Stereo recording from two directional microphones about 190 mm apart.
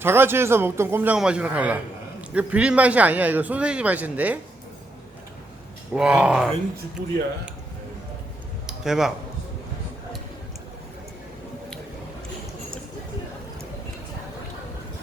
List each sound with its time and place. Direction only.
0.0 s speech: 10° right (ahead or behind)
5.9 s speech: 5° right (ahead or behind)
8.6 s a sound: centre (ahead or behind)